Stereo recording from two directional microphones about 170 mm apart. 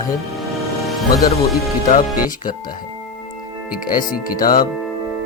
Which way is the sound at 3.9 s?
55° left (ahead or behind).